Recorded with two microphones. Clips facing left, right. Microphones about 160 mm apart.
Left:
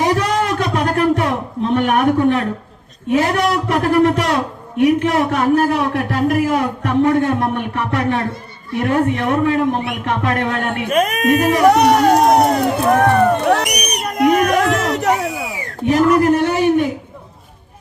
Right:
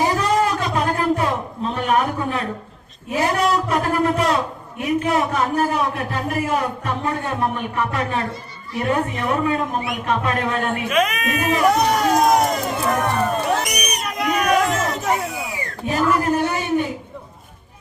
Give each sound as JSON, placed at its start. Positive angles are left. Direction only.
{"t": 0.0, "sound": "a sound", "side_deg": 75}
{"t": 3.1, "sound": "a man's voice", "side_deg": 75}
{"t": 10.8, "sound": "speech", "side_deg": 45}
{"t": 11.3, "sound": "speech", "side_deg": 75}